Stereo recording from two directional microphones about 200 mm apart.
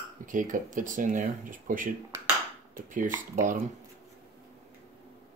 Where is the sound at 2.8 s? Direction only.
40° right (ahead or behind).